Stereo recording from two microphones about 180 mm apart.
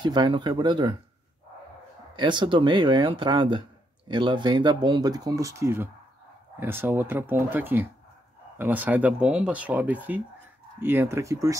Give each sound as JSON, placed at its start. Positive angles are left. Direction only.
{"t": 0.0, "sound": "speech", "side_deg": -25}
{"t": 2.1, "sound": "speech", "side_deg": -25}